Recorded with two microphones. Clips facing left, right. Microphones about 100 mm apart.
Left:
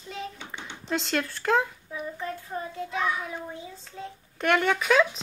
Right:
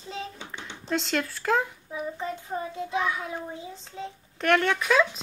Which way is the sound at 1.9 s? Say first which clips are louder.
Right 2 dB; 20° right (ahead or behind).